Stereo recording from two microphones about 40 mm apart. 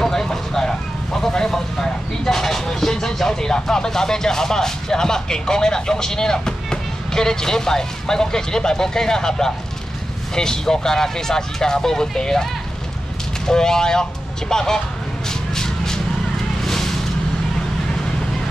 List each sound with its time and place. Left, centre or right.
0.0 s vehicle: centre
10.3 s speech: centre
13.5 s speech: centre
15.2 s a sound: centre